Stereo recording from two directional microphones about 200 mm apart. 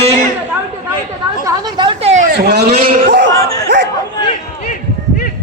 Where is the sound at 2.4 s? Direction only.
55° right (ahead or behind).